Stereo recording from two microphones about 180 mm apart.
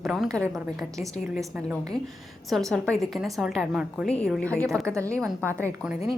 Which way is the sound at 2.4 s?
Centre (ahead or behind).